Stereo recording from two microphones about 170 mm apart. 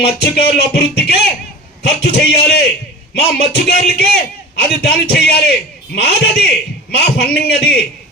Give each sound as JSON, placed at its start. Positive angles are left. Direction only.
{"t": 0.0, "sound": "a man's voice", "side_deg": 70}